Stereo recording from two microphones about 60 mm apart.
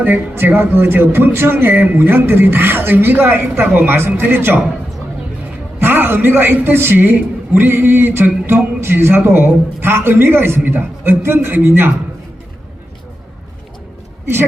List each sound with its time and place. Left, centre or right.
0.0 s speech: right
5.8 s speech: right